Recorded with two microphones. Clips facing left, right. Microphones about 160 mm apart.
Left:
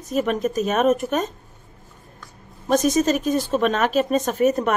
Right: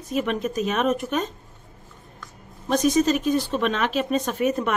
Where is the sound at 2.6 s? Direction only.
45° left (ahead or behind).